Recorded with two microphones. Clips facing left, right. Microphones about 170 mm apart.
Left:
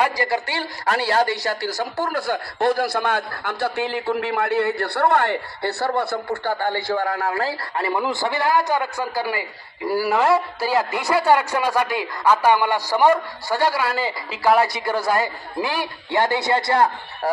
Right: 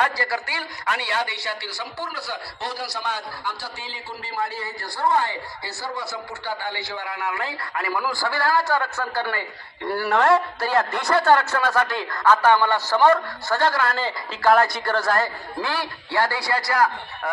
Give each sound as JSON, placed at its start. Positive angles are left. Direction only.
{"t": 0.0, "sound": "a man's voice", "side_deg": 20}